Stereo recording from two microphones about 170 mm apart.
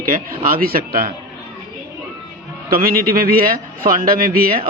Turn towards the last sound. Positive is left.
turn(degrees=-60)  # may be behind; listen again after turning